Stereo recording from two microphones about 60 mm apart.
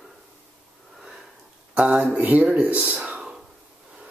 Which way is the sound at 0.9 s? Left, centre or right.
Centre.